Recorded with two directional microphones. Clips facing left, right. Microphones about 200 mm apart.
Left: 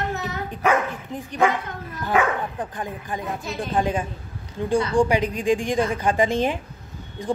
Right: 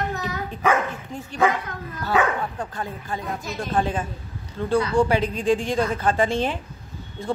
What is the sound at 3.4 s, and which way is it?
Speech, 30° left (ahead or behind).